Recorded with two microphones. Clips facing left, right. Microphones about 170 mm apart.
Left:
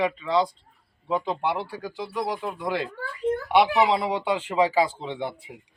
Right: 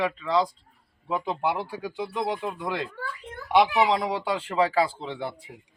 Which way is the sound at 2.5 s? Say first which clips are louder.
Left 2 dB; 5° left (ahead or behind).